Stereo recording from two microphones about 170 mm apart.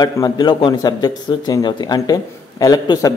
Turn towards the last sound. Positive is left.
turn(degrees=20)  # may be behind; listen again after turning